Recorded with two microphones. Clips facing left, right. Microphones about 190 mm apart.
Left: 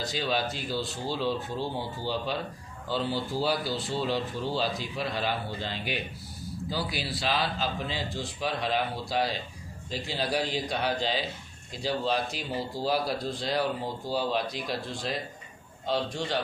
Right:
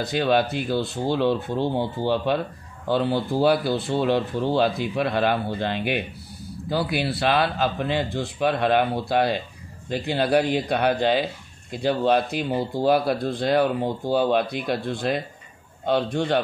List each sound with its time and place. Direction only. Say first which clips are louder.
0.0 s speech: right 9 dB; 60° right (ahead or behind)